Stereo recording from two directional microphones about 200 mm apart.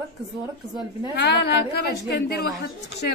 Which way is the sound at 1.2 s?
55° left (ahead or behind).